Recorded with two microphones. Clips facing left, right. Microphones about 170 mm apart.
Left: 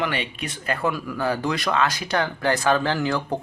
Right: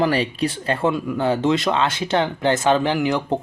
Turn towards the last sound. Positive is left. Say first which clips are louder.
# right 4 dB
turn(degrees=-20)  # may be behind; listen again after turning